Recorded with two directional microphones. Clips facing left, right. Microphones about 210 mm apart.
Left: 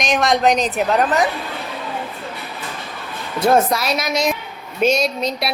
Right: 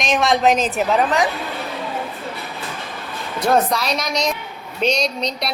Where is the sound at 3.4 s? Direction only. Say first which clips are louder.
Left 2 dB; 10° left (ahead or behind).